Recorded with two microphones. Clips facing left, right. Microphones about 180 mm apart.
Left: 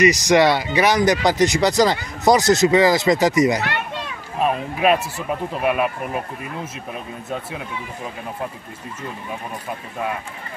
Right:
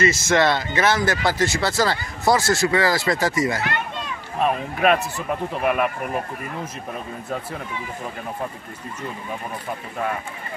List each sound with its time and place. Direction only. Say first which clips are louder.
0.0 s speech: left 4 dB; 15° left (ahead or behind)
4.4 s speech: left 1 dB; 5° left (ahead or behind)